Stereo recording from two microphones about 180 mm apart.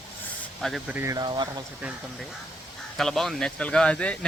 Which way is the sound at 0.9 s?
15° right (ahead or behind).